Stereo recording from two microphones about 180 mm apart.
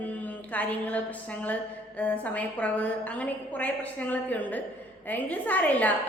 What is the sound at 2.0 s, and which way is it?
A woman's voice, 10° left (ahead or behind).